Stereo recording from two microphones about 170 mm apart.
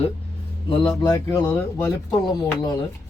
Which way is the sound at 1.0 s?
20° left (ahead or behind).